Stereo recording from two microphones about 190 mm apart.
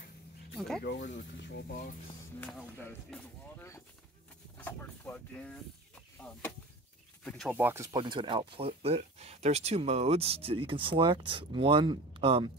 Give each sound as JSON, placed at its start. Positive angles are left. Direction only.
{"t": 0.6, "sound": "speech", "side_deg": 0}
{"t": 0.8, "sound": "speech", "side_deg": 70}
{"t": 1.7, "sound": "speech", "side_deg": 45}
{"t": 2.4, "sound": "speech", "side_deg": 10}
{"t": 7.2, "sound": "speech", "side_deg": 0}
{"t": 7.5, "sound": "speech", "side_deg": -10}